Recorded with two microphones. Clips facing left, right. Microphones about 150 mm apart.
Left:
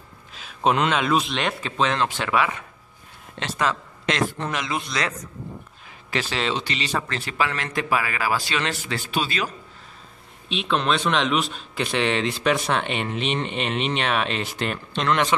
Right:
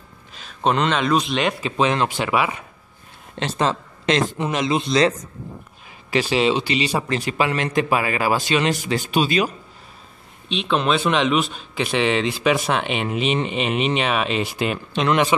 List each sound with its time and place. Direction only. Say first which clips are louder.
0.3 s a man's voice: right 1 dB; 5° left (ahead or behind)
3.3 s a man's voice: right 3 dB; 25° right (ahead or behind)
6.0 s a man's voice: right 7 dB; 10° right (ahead or behind)
10.5 s a man's voice: right 3 dB; centre (ahead or behind)